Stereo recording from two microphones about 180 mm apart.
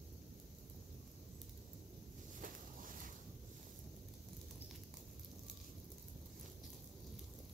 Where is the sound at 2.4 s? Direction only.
50° right (ahead or behind).